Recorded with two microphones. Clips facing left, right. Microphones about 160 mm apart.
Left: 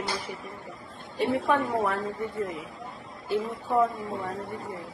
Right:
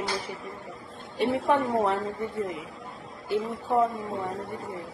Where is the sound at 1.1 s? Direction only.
20° right (ahead or behind).